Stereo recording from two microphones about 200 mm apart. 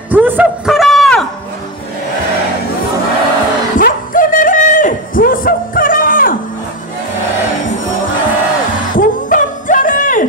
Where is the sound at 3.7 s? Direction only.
45° left (ahead or behind).